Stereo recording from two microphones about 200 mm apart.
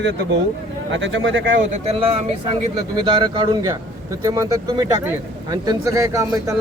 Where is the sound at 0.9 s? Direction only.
70° right (ahead or behind).